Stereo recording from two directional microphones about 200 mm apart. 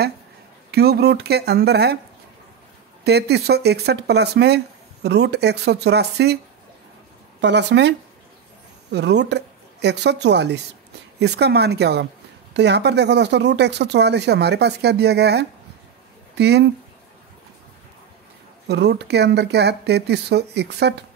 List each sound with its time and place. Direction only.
0.7 s speech: 55° right (ahead or behind)
3.0 s speech: 55° right (ahead or behind)
7.4 s speech: 60° right (ahead or behind)
8.9 s a woman's voice: 60° right (ahead or behind)
18.7 s speech: 55° right (ahead or behind)